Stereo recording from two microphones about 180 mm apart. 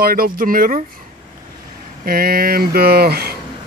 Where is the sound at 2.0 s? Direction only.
55° right (ahead or behind).